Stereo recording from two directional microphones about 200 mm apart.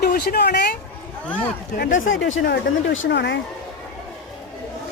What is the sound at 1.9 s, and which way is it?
Speech, 75° left (ahead or behind).